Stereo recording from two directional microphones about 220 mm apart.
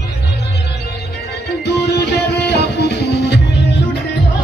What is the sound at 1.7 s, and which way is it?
Music, 50° left (ahead or behind).